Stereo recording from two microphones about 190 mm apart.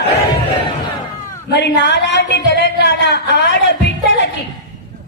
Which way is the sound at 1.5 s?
65° left (ahead or behind).